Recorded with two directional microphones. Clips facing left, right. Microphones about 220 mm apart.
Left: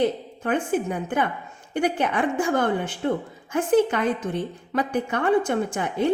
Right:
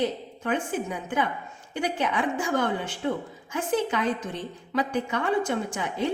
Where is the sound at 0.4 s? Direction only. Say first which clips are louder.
Left 4 dB; 55° left (ahead or behind).